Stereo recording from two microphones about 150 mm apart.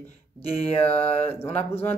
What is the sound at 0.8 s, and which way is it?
Mantra, 45° left (ahead or behind).